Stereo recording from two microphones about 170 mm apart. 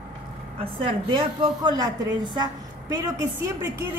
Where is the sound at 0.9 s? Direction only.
30° right (ahead or behind).